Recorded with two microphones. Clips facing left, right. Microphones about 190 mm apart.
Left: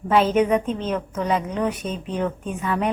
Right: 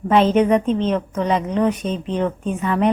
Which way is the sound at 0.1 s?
5° left (ahead or behind).